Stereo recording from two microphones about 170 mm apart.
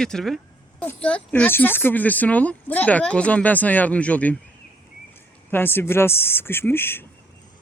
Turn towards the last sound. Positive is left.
turn(degrees=15)  # may be behind; listen again after turning